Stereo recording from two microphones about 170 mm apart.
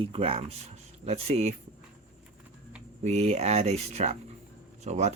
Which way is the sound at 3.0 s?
40° right (ahead or behind).